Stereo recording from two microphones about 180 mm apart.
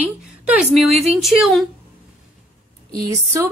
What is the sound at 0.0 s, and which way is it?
A woman's voice, 5° right (ahead or behind).